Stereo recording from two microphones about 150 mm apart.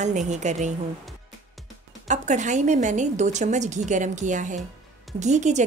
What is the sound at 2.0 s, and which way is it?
A woman's voice, 55° right (ahead or behind).